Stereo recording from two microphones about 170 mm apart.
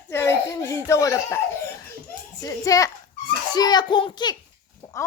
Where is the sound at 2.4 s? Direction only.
20° left (ahead or behind).